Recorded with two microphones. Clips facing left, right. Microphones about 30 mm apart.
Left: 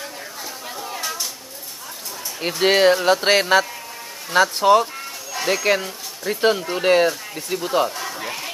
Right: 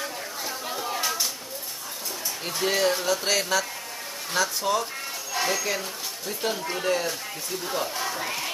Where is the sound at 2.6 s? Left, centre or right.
Left.